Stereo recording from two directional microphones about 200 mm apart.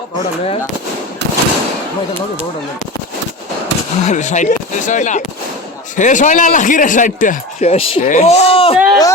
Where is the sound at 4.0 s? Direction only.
35° left (ahead or behind).